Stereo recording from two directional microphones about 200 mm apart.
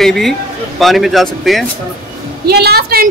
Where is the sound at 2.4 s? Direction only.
55° right (ahead or behind).